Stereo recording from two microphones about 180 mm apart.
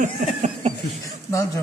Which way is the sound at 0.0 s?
40° right (ahead or behind).